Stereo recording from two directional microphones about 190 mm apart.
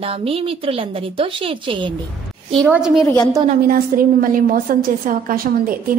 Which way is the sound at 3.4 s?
50° right (ahead or behind).